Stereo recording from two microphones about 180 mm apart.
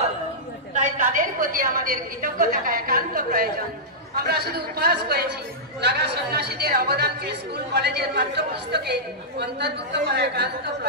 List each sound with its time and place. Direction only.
0.7 s a woman's voice: 45° right (ahead or behind); by 8.9 s 65° right (ahead or behind)
10.1 s speech: 65° right (ahead or behind)